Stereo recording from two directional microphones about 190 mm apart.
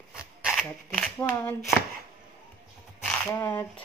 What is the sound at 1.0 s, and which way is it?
Speech, 10° left (ahead or behind).